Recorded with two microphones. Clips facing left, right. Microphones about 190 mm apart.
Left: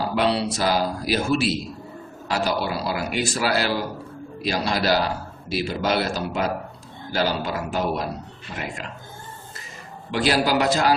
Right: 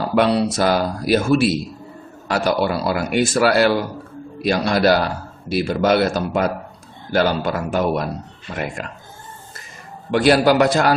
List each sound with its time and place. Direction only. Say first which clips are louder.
0.2 s a man's voice: right 6 dB; 50° right (ahead or behind)
10.1 s a man's voice: right 7 dB; 55° right (ahead or behind)